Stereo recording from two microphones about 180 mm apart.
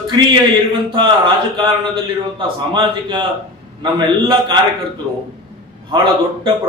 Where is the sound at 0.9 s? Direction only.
25° right (ahead or behind).